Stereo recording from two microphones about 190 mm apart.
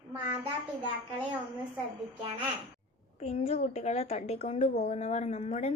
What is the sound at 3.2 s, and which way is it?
A woman's voice, 30° left (ahead or behind).